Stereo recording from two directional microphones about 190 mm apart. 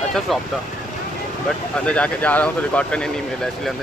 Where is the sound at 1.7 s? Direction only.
5° left (ahead or behind).